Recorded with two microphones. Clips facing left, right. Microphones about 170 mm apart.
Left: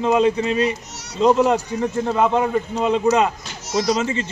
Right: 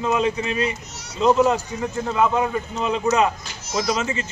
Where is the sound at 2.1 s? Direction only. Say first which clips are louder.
Left 1 dB; 35° left (ahead or behind).